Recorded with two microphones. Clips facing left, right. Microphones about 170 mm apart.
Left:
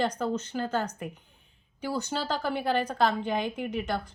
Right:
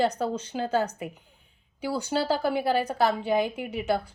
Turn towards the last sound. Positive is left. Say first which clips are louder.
# right 3 dB
turn(degrees=-10)  # may be behind; listen again after turning